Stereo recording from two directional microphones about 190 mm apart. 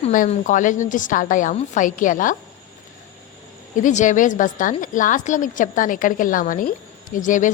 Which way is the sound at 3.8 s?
40° left (ahead or behind).